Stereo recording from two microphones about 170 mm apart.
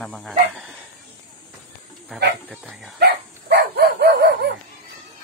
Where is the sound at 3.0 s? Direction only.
70° right (ahead or behind).